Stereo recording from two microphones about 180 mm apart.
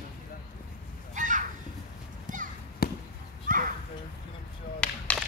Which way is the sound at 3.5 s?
50° right (ahead or behind).